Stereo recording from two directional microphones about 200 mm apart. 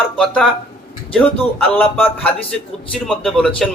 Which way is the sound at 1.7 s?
10° left (ahead or behind).